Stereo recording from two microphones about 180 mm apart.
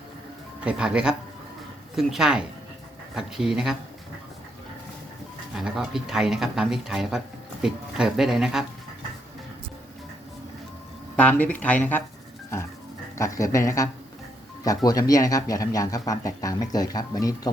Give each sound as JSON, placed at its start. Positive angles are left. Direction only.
{"t": 0.6, "sound": "speech", "side_deg": -5}
{"t": 5.5, "sound": "speech", "side_deg": 0}
{"t": 11.2, "sound": "speech", "side_deg": 10}
{"t": 13.1, "sound": "speech", "side_deg": 15}